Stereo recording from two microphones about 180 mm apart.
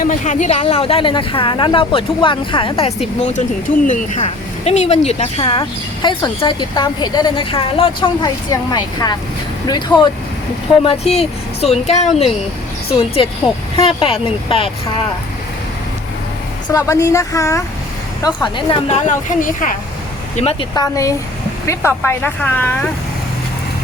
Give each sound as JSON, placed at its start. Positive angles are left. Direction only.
{"t": 0.0, "sound": "speech", "side_deg": 45}
{"t": 3.2, "sound": "speech", "side_deg": 40}
{"t": 10.8, "sound": "speech", "side_deg": 35}
{"t": 16.6, "sound": "speech", "side_deg": 20}
{"t": 18.9, "sound": "a woman's voice", "side_deg": 40}
{"t": 20.3, "sound": "speech", "side_deg": 35}
{"t": 20.7, "sound": "speech", "side_deg": 20}